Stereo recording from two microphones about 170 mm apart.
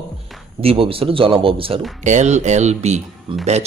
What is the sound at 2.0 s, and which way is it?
A man's voice, 45° right (ahead or behind).